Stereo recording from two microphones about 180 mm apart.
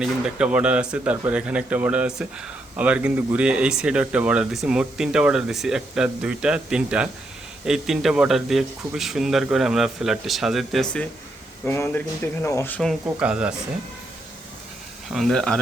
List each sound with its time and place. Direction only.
0.0 s speech: 5° right (ahead or behind)
15.1 s speech: centre (ahead or behind)